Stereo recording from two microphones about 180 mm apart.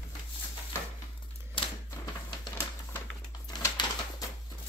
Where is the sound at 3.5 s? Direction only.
25° left (ahead or behind).